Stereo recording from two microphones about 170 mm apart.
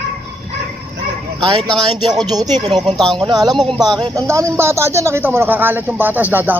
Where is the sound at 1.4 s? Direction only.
30° right (ahead or behind).